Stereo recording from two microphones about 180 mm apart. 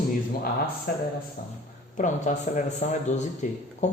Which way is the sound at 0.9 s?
60° left (ahead or behind).